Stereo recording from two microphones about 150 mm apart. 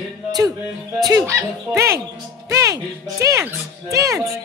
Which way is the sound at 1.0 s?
20° right (ahead or behind).